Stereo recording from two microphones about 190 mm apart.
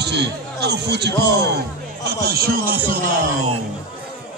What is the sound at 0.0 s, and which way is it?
A man's voice, 60° right (ahead or behind).